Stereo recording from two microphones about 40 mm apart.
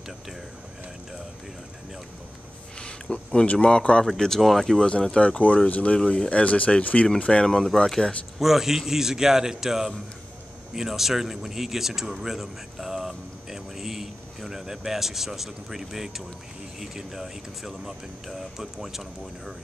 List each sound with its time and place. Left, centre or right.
2.8 s a sound: left
3.5 s speech: left
4.0 s speech: centre
4.7 s speech: left
5.4 s speech: left
7.7 s speech: centre
8.4 s speech: centre